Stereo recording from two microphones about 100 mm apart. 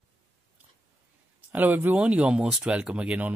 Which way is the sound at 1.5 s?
20° right (ahead or behind).